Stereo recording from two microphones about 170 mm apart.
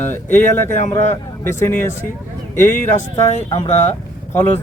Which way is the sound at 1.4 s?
15° left (ahead or behind).